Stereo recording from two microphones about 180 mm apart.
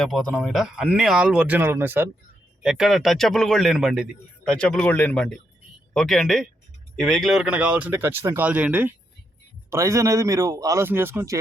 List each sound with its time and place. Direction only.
0.0 s a man's voice: centre (ahead or behind)